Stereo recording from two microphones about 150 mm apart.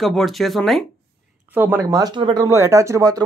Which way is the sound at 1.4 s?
15° right (ahead or behind).